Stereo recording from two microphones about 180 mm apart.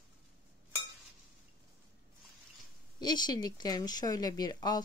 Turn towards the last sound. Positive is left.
turn(degrees=20)  # may be behind; listen again after turning